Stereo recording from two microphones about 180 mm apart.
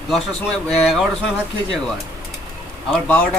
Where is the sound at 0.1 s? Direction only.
Centre (ahead or behind).